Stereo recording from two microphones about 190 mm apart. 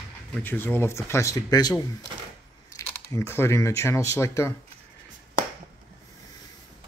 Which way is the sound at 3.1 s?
15° left (ahead or behind).